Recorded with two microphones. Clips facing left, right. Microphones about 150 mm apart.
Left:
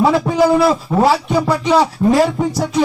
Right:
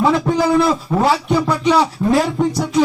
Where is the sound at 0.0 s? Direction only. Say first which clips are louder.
Left 2 dB; 5° left (ahead or behind).